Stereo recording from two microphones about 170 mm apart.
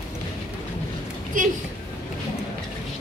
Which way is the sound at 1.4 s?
50° right (ahead or behind).